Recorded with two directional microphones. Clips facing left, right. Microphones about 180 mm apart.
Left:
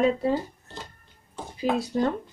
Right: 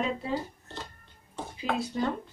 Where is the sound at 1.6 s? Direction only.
45° left (ahead or behind).